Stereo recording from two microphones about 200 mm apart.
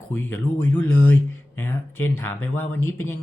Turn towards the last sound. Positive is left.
turn(degrees=15)  # may be behind; listen again after turning